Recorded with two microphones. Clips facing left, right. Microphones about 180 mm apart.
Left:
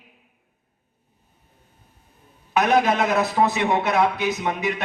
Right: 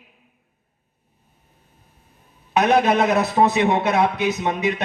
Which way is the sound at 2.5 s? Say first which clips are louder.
Right 2 dB; 20° right (ahead or behind).